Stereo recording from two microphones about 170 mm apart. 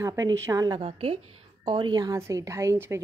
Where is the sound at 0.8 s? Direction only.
35° right (ahead or behind).